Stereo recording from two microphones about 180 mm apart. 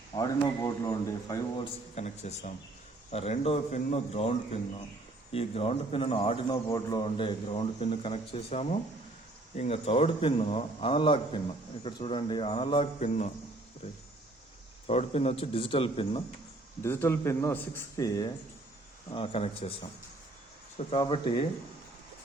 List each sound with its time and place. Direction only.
0.1 s speech: 20° left (ahead or behind)
2.0 s speech: 40° left (ahead or behind)
14.8 s speech: 35° left (ahead or behind)
16.8 s speech: 10° left (ahead or behind)
19.1 s speech: 30° left (ahead or behind)
21.0 s speech: 25° left (ahead or behind)